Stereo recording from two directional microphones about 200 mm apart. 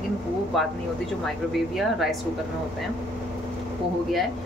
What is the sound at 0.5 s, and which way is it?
A woman's voice, centre (ahead or behind).